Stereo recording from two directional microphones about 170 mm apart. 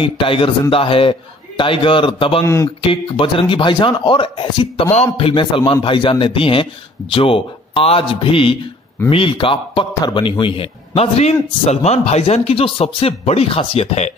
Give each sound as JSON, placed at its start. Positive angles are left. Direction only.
{"t": 0.0, "sound": "a man's voice", "side_deg": 30}
{"t": 2.4, "sound": "speech", "side_deg": 15}
{"t": 2.8, "sound": "a man's voice", "side_deg": 30}